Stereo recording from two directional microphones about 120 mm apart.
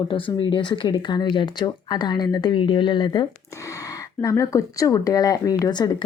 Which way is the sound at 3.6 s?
25° left (ahead or behind).